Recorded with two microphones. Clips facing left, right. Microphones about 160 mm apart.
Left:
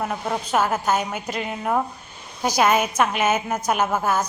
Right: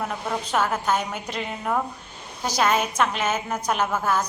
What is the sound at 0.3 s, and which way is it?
A man's voice, 10° left (ahead or behind).